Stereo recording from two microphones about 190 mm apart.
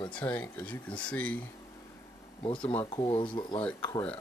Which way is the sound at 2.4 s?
25° left (ahead or behind).